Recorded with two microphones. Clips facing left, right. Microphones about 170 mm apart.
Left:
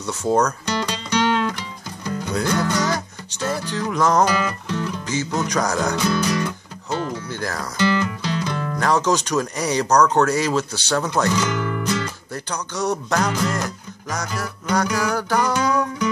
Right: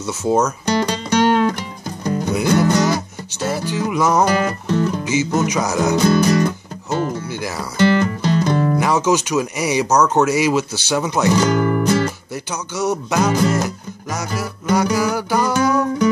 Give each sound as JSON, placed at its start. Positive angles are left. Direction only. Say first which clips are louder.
{"t": 0.0, "sound": "music", "louder": "right 2 dB", "side_deg": -5}
{"t": 0.7, "sound": "music", "louder": "right 6 dB", "side_deg": -45}
{"t": 2.5, "sound": "music", "louder": "right 7 dB", "side_deg": -25}
{"t": 3.4, "sound": "speech", "louder": "right 3 dB", "side_deg": -5}
{"t": 4.3, "sound": "music", "louder": "right 5 dB", "side_deg": -45}
{"t": 5.0, "sound": "speech", "louder": "right 6 dB", "side_deg": -5}
{"t": 5.5, "sound": "music", "louder": "right 3 dB", "side_deg": -5}
{"t": 6.0, "sound": "music", "louder": "right 6 dB", "side_deg": -45}
{"t": 7.2, "sound": "speech", "louder": "right 2 dB", "side_deg": -10}
{"t": 7.8, "sound": "music", "louder": "right 5 dB", "side_deg": -50}
{"t": 8.7, "sound": "speech", "louder": "right 3 dB", "side_deg": -5}
{"t": 11.3, "sound": "speech", "louder": "right 7 dB", "side_deg": -35}
{"t": 12.4, "sound": "music", "louder": "right 3 dB", "side_deg": -5}
{"t": 14.1, "sound": "speech", "louder": "right 3 dB", "side_deg": -5}